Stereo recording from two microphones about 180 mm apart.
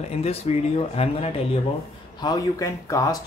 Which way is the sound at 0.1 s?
35° left (ahead or behind).